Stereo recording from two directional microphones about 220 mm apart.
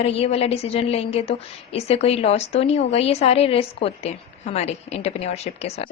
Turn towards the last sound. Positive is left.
turn(degrees=30)  # may be behind; listen again after turning